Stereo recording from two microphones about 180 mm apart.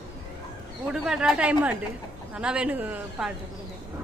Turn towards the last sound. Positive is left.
turn(degrees=-10)  # may be behind; listen again after turning